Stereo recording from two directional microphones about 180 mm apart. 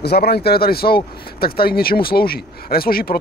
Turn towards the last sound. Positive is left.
turn(degrees=55)  # may be behind; listen again after turning